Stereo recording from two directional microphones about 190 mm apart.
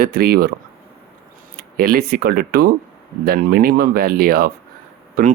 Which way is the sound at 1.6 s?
50° right (ahead or behind).